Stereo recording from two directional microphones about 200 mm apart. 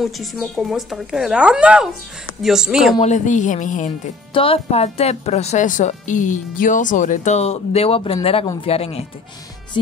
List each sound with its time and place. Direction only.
0.0 s speech: centre (ahead or behind)
3.0 s speech: 35° left (ahead or behind)
4.3 s speech: 25° left (ahead or behind)